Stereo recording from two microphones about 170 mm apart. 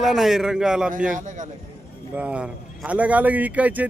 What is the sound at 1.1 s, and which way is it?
Speech, 45° right (ahead or behind).